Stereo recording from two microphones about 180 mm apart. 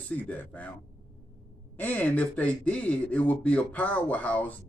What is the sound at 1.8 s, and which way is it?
Speech, 10° left (ahead or behind).